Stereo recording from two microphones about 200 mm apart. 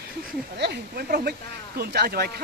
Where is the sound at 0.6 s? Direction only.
55° right (ahead or behind).